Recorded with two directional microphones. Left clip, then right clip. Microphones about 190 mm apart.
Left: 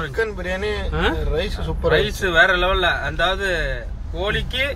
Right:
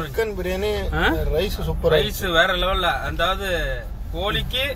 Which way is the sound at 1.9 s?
10° right (ahead or behind).